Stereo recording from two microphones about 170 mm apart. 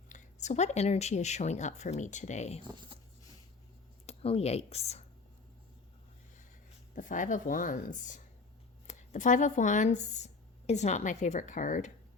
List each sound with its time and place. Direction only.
0.1 s speech: 45° left (ahead or behind)
2.6 s speech: 25° right (ahead or behind)
4.0 s speech: 35° left (ahead or behind)
6.9 s speech: 50° left (ahead or behind)